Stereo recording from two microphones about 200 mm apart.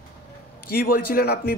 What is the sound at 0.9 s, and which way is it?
Speech, 50° left (ahead or behind).